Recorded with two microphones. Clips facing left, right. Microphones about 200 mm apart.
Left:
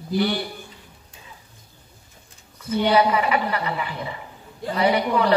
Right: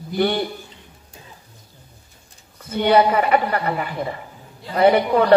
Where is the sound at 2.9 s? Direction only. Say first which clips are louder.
Right 4 dB; 50° right (ahead or behind).